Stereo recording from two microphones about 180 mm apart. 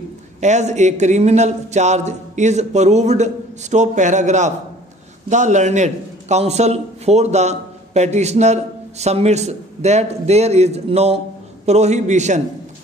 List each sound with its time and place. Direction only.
0.4 s a man's voice: 40° right (ahead or behind)